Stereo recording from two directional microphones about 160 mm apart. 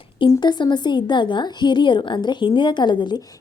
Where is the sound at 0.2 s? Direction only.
25° left (ahead or behind).